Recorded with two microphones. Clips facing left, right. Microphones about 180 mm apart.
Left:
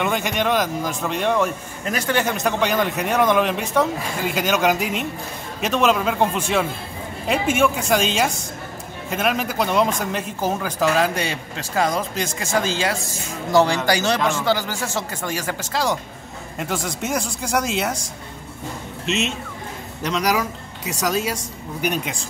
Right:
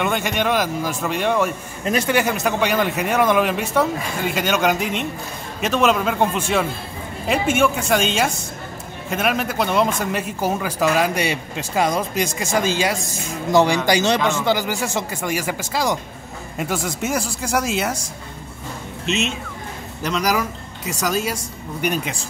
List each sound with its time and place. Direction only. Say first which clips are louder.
0.0 s a man's voice: right 1 dB; centre (ahead or behind)
1.9 s speech: right 4 dB; 25° right (ahead or behind)
2.1 s a man's voice: right 1 dB; 5° right (ahead or behind)
19.0 s a man's voice: right 1 dB; centre (ahead or behind)